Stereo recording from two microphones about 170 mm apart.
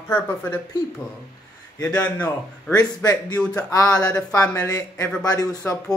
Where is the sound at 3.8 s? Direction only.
5° left (ahead or behind).